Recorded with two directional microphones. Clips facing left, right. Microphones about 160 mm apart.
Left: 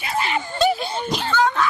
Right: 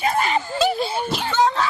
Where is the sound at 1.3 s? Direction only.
30° right (ahead or behind).